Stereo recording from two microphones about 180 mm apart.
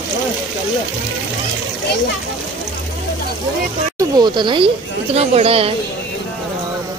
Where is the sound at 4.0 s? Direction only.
25° right (ahead or behind).